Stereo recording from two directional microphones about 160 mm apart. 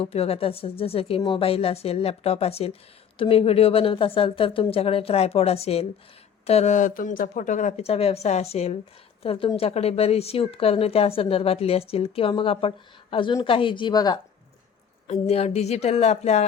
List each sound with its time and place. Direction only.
0.0 s a woman's voice: 40° left (ahead or behind)
15.0 s speech: 40° left (ahead or behind)